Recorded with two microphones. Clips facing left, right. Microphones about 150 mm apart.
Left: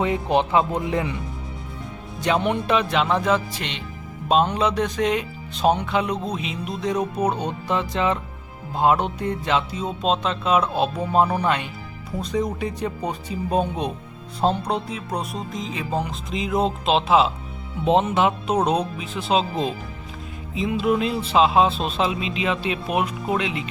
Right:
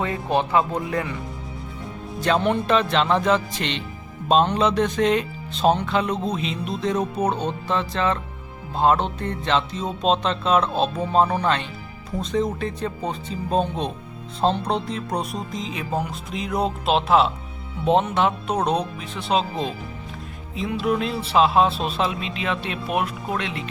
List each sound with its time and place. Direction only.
0.0 s speech: 20° left (ahead or behind)
2.2 s speech: 15° left (ahead or behind)